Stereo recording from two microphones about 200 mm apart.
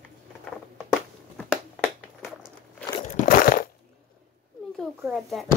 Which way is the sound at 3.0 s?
40° left (ahead or behind).